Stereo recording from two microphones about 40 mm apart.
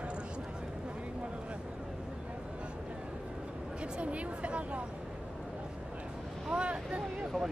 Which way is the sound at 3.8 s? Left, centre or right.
Right.